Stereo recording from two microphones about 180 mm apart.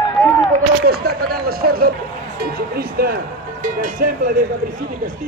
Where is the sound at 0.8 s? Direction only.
60° right (ahead or behind).